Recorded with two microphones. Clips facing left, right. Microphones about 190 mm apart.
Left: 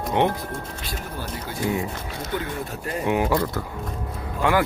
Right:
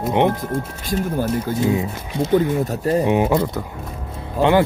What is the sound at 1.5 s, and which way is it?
Speech, 20° right (ahead or behind).